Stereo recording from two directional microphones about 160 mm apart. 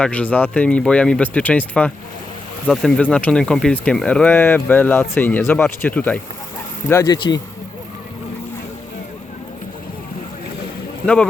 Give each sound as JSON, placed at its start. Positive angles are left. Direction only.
{"t": 0.0, "sound": "speech", "side_deg": 10}
{"t": 11.0, "sound": "speech", "side_deg": 5}